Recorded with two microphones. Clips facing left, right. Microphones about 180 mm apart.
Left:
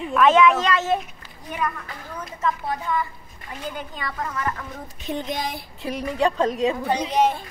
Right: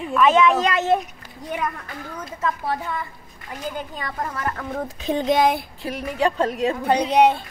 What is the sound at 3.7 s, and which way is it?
Speech, 40° right (ahead or behind).